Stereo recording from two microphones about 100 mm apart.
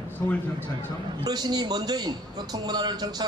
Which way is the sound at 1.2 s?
45° right (ahead or behind).